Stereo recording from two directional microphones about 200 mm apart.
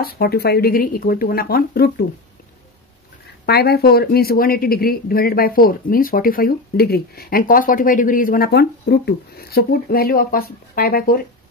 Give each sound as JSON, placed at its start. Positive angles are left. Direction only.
{"t": 0.0, "sound": "speech", "side_deg": 50}
{"t": 3.4, "sound": "speech", "side_deg": 50}